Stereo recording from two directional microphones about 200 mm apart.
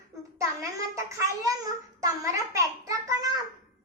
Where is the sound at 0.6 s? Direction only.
15° right (ahead or behind).